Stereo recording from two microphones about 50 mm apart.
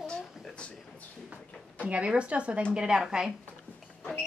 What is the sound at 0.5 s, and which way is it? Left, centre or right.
Speech, left.